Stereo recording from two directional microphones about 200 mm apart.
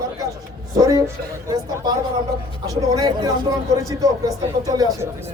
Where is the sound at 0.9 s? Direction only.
15° right (ahead or behind).